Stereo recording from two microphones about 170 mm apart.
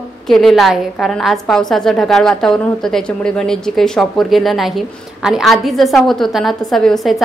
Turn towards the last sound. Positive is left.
turn(degrees=0)  # may be behind; listen again after turning